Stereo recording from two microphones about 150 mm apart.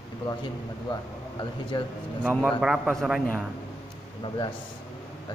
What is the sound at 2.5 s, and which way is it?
Speech, 5° right (ahead or behind).